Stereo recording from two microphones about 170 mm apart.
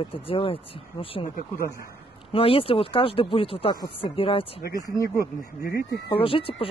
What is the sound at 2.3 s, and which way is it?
Speech, 35° left (ahead or behind).